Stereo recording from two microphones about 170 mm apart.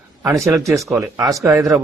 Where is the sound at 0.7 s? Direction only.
Centre (ahead or behind).